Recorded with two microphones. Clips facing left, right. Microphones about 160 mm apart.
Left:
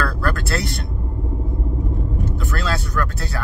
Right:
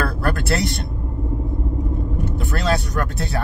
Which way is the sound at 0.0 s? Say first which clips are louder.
Right 1 dB; 20° right (ahead or behind).